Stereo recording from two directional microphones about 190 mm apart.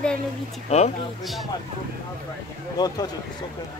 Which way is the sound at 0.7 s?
35° left (ahead or behind).